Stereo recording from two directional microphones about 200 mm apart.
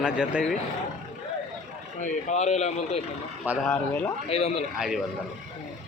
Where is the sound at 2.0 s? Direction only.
35° left (ahead or behind).